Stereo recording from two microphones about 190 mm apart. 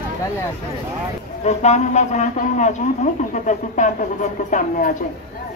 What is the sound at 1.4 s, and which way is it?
Speech, 35° left (ahead or behind).